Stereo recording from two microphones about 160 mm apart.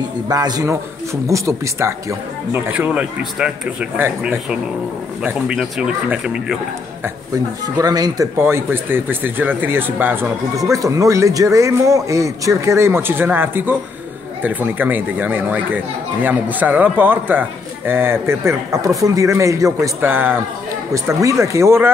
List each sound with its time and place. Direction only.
0.3 s speech: 25° right (ahead or behind); by 6.6 s 5° right (ahead or behind)
7.6 s speech: 25° right (ahead or behind)